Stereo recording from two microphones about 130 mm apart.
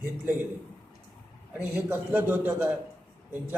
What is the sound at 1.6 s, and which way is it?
A man's voice, 15° right (ahead or behind).